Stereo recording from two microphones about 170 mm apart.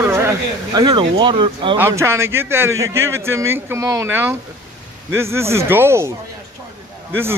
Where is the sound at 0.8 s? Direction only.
25° right (ahead or behind).